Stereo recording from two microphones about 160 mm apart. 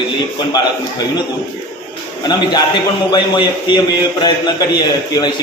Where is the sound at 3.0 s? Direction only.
25° left (ahead or behind).